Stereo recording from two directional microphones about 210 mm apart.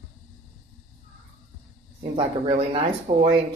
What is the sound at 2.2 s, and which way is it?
Speech, 25° right (ahead or behind).